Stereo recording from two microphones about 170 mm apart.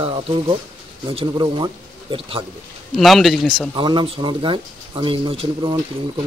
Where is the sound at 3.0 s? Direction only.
Centre (ahead or behind).